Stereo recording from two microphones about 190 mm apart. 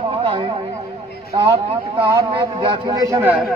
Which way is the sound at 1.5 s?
25° right (ahead or behind).